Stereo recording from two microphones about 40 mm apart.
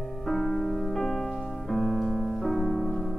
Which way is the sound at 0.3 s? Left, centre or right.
Centre.